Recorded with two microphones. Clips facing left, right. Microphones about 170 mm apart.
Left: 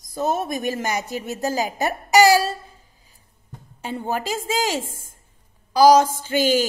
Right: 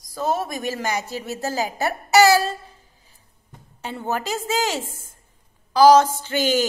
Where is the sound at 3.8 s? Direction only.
10° left (ahead or behind).